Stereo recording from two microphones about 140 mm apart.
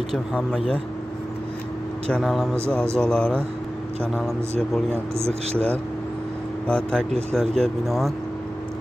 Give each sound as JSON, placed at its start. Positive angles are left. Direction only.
{"t": 0.1, "sound": "speech", "side_deg": 5}
{"t": 2.0, "sound": "speech", "side_deg": 5}
{"t": 5.1, "sound": "speech", "side_deg": -45}
{"t": 6.7, "sound": "speech", "side_deg": 5}